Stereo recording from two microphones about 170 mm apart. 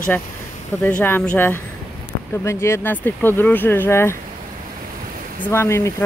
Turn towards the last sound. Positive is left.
turn(degrees=15)  # may be behind; listen again after turning